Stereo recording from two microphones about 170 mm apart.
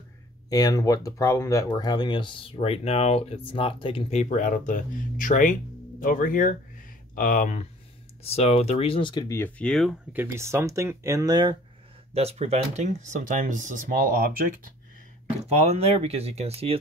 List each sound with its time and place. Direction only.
0.5 s speech: 20° left (ahead or behind); by 7.6 s 50° left (ahead or behind)
8.2 s speech: 35° left (ahead or behind)
9.4 s speech: 5° left (ahead or behind)
10.1 s speech: 15° right (ahead or behind)
12.1 s speech: 35° right (ahead or behind); by 14.5 s 60° right (ahead or behind)
15.4 s speech: 40° right (ahead or behind)